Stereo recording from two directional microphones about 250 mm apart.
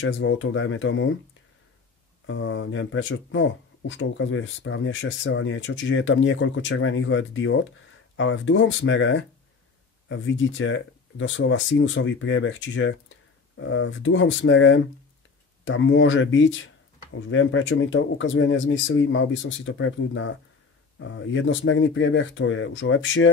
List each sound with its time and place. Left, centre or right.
0.0 s speech: left
2.2 s speech: left